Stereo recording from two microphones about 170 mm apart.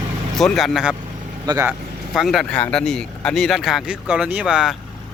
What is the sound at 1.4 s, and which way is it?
Speech, 20° right (ahead or behind).